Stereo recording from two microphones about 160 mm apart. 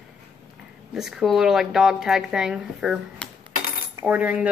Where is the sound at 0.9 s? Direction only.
Centre (ahead or behind).